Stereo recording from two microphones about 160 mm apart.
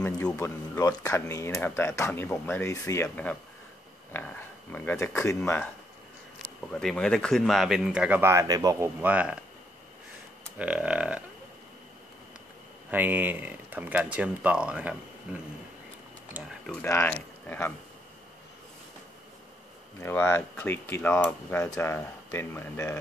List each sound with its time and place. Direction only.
0.0 s speech: 10° left (ahead or behind)
6.7 s speech: 5° left (ahead or behind)
10.6 s speech: 10° right (ahead or behind)
12.9 s speech: 10° right (ahead or behind)
16.8 s speech: 15° left (ahead or behind)
20.0 s speech: 10° left (ahead or behind)